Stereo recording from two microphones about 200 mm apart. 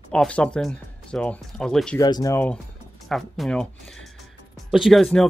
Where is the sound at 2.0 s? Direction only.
20° left (ahead or behind); by 3.7 s centre (ahead or behind).